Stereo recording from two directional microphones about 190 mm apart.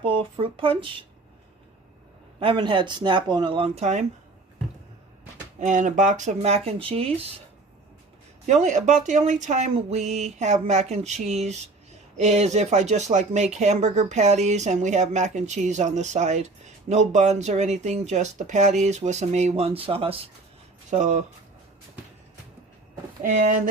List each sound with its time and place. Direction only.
0.0 s speech: 30° right (ahead or behind)
2.4 s speech: 25° right (ahead or behind)
5.5 s speech: 40° right (ahead or behind)
8.4 s speech: 40° right (ahead or behind)